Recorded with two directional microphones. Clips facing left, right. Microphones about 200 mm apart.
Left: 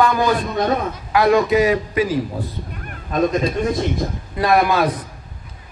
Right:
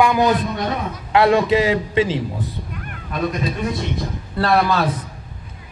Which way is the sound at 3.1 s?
45° left (ahead or behind).